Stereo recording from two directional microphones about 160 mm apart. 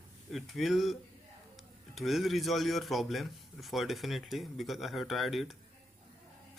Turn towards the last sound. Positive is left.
turn(degrees=0)  # may be behind; listen again after turning